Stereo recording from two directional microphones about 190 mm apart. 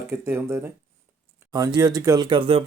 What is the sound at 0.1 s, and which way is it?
Speech, 15° right (ahead or behind).